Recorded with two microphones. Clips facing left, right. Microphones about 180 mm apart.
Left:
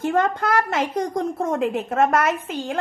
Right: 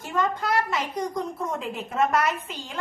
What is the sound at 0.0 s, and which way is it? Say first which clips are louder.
A child's voice: left 6 dB; 55° left (ahead or behind).